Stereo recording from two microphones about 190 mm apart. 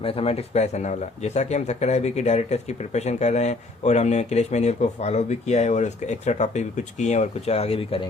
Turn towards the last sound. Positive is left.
turn(degrees=30)  # may be behind; listen again after turning